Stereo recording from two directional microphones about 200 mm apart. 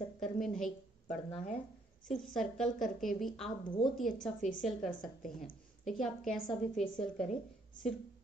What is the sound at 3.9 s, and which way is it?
Speech, centre (ahead or behind).